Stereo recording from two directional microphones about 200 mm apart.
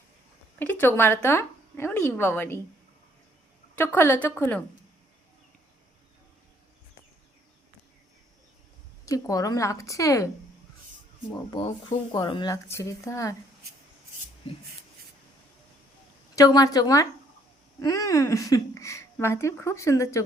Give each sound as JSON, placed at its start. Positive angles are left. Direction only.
{"t": 0.6, "sound": "a woman's voice", "side_deg": 10}
{"t": 3.8, "sound": "a woman's voice", "side_deg": 10}
{"t": 9.0, "sound": "a woman's voice", "side_deg": 15}
{"t": 11.3, "sound": "a woman's voice", "side_deg": 25}
{"t": 16.3, "sound": "a woman's voice", "side_deg": 20}